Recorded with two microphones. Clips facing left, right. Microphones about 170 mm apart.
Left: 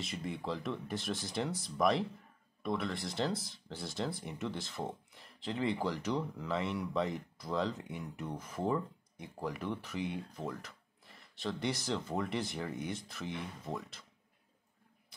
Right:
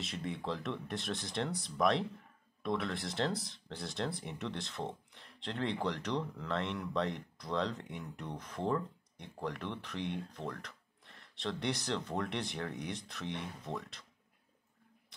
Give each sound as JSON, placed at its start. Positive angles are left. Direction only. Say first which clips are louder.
{"t": 0.0, "sound": "speech", "louder": "even", "side_deg": 0}